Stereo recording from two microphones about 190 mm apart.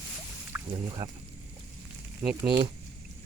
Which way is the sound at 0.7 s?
20° right (ahead or behind).